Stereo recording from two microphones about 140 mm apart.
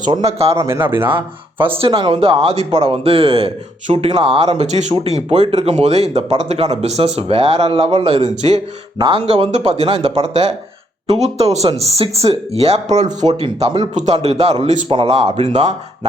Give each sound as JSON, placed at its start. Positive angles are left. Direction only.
{"t": 0.3, "sound": "speech", "side_deg": -45}
{"t": 0.5, "sound": "speech", "side_deg": -20}
{"t": 1.1, "sound": "speech", "side_deg": -35}
{"t": 9.0, "sound": "speech", "side_deg": -35}
{"t": 14.8, "sound": "speech", "side_deg": -40}